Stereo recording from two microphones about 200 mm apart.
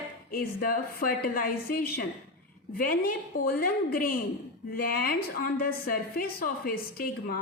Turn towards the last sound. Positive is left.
turn(degrees=50)  # may be behind; listen again after turning